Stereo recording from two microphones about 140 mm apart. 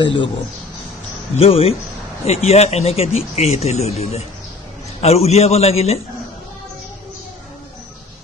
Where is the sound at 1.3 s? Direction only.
45° left (ahead or behind).